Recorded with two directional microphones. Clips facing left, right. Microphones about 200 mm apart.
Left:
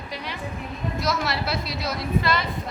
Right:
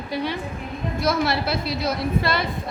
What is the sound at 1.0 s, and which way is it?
Speech, 55° right (ahead or behind).